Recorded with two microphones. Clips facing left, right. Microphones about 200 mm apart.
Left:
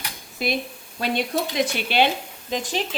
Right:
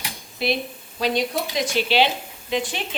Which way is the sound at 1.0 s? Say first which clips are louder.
Right 1 dB; 55° left (ahead or behind).